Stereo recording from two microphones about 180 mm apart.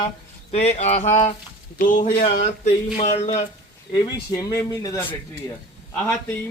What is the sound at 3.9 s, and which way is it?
Speech, 20° left (ahead or behind).